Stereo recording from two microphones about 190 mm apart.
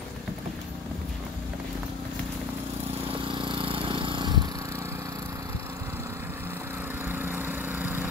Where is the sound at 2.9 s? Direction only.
30° right (ahead or behind).